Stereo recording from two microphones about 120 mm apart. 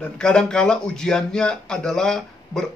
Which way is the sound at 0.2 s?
5° left (ahead or behind).